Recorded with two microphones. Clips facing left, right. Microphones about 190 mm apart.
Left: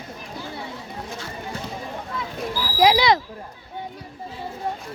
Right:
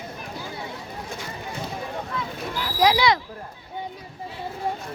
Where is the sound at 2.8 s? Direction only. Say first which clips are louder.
Left 2 dB; 25° left (ahead or behind).